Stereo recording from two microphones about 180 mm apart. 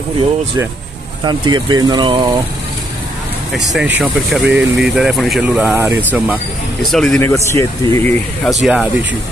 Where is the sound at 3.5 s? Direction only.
Centre (ahead or behind).